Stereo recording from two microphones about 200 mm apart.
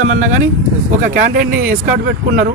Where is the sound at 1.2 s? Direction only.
40° right (ahead or behind).